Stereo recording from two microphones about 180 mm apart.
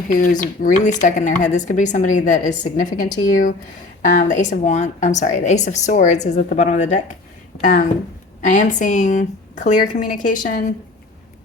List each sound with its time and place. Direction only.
0.1 s speech: 45° left (ahead or behind)